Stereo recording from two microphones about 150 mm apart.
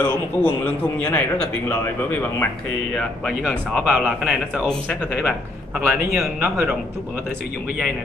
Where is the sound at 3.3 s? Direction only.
10° right (ahead or behind).